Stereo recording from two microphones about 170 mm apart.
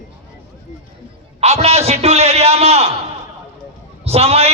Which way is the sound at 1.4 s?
40° right (ahead or behind).